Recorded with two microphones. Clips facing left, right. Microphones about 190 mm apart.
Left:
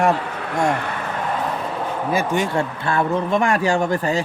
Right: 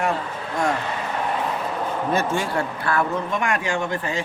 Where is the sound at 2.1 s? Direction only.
15° left (ahead or behind); by 4.2 s 40° left (ahead or behind).